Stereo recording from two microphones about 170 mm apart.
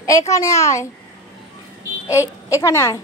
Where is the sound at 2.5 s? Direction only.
20° left (ahead or behind).